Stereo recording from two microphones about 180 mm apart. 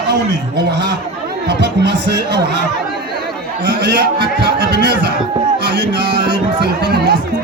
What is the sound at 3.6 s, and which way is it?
A man's voice, 75° right (ahead or behind).